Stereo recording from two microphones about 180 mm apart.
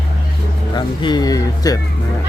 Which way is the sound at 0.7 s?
25° left (ahead or behind).